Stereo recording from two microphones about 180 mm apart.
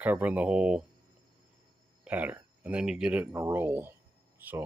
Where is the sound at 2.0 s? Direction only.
10° right (ahead or behind).